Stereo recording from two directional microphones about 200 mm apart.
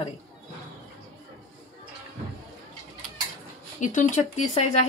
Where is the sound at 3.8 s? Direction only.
40° left (ahead or behind).